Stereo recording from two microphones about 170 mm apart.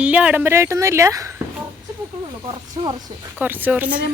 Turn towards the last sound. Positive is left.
turn(degrees=-10)  # may be behind; listen again after turning